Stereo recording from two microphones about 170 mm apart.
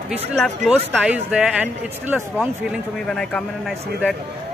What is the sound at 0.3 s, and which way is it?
Speech, 5° right (ahead or behind).